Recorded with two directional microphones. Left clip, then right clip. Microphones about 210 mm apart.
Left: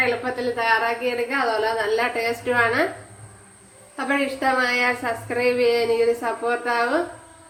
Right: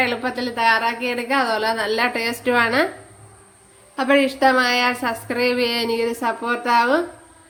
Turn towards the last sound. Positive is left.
turn(degrees=-50)  # may be behind; listen again after turning